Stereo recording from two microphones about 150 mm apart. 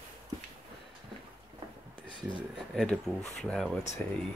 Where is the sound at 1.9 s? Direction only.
35° left (ahead or behind).